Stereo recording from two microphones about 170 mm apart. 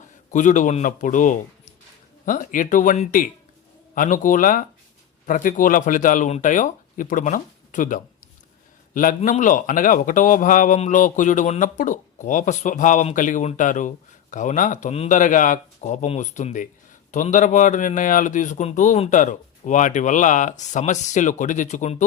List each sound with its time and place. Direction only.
0.0 s a man's voice: 45° left (ahead or behind)